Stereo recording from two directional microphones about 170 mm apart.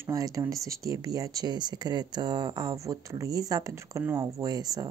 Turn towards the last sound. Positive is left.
turn(degrees=-25)  # may be behind; listen again after turning